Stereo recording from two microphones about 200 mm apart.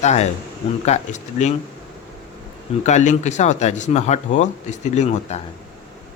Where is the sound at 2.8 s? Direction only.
35° left (ahead or behind).